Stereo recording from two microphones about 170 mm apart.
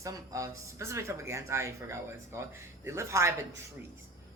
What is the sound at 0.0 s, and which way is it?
Speech, 20° right (ahead or behind).